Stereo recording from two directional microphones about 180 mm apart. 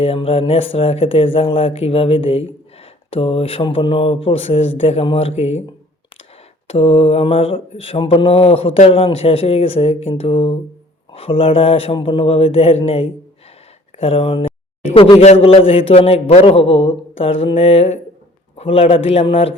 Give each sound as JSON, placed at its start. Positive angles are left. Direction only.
{"t": 0.0, "sound": "mantra", "side_deg": 30}
{"t": 6.7, "sound": "mantra", "side_deg": 35}